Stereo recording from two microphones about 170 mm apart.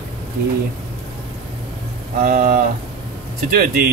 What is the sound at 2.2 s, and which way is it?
Speech, 55° right (ahead or behind).